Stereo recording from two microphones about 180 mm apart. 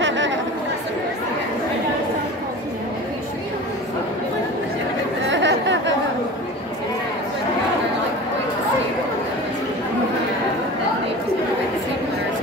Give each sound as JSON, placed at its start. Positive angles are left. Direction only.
{"t": 0.0, "sound": "chatter", "side_deg": -90}
{"t": 5.3, "sound": "chatter", "side_deg": -90}